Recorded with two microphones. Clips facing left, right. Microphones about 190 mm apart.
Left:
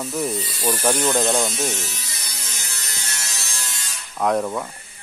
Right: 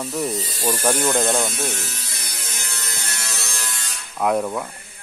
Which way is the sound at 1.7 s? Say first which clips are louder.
Left 1 dB; 55° right (ahead or behind).